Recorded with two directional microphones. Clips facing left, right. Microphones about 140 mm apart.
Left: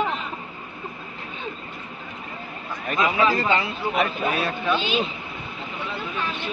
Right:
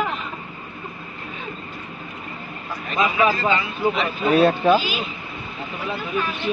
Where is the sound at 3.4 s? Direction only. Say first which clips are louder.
Right 1 dB; 50° left (ahead or behind).